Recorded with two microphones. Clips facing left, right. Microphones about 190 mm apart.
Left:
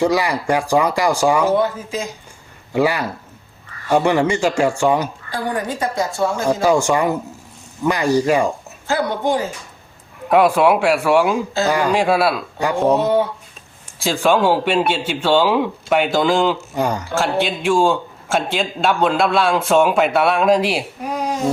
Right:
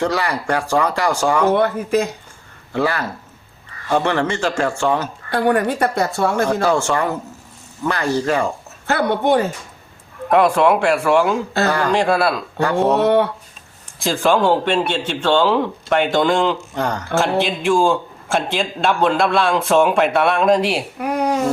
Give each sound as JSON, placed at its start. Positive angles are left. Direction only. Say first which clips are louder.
{"t": 0.0, "sound": "speech", "louder": "left 3 dB", "side_deg": 10}
{"t": 1.5, "sound": "a woman's voice", "louder": "right 3 dB", "side_deg": -60}
{"t": 2.7, "sound": "speech", "louder": "left 2 dB", "side_deg": 10}
{"t": 5.3, "sound": "a woman's voice", "louder": "right 8 dB", "side_deg": -65}
{"t": 6.5, "sound": "speech", "louder": "left 2 dB", "side_deg": 10}
{"t": 8.9, "sound": "a woman's voice", "louder": "right 2 dB", "side_deg": -60}
{"t": 10.2, "sound": "a man's voice", "louder": "left 1 dB", "side_deg": 5}
{"t": 13.0, "sound": "a woman's voice", "louder": "right 2 dB", "side_deg": -65}
{"t": 14.0, "sound": "a man's voice", "louder": "even", "side_deg": 0}
{"t": 21.0, "sound": "a sound", "louder": "right 4 dB", "side_deg": -65}